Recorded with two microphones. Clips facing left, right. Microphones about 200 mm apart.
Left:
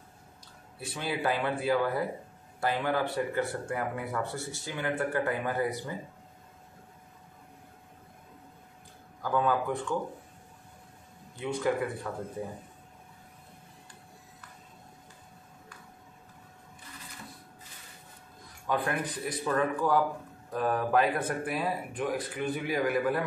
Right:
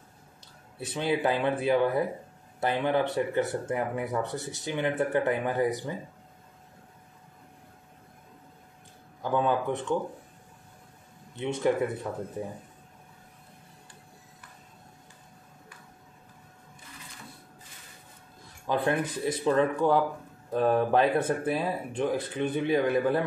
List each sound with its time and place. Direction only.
0.7 s speech: 25° right (ahead or behind)
9.2 s speech: 25° right (ahead or behind)
11.3 s speech: 25° right (ahead or behind)
18.7 s speech: 25° right (ahead or behind)